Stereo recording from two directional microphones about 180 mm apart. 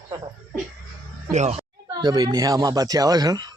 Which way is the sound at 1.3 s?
40° right (ahead or behind).